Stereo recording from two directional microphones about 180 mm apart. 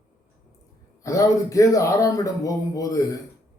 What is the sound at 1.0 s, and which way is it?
Speech, 15° left (ahead or behind).